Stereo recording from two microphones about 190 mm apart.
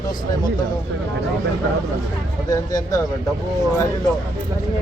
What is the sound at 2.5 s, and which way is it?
Speech, 20° left (ahead or behind).